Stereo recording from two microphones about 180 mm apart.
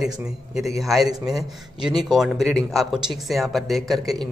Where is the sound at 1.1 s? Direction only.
20° right (ahead or behind).